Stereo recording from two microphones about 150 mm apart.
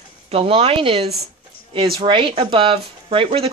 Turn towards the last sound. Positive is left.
turn(degrees=-40)  # may be behind; listen again after turning